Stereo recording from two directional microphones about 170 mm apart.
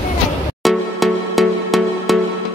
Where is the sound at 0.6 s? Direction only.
Centre (ahead or behind).